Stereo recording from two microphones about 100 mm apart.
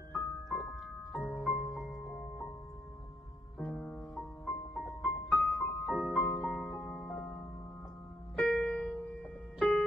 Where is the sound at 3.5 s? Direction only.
5° left (ahead or behind).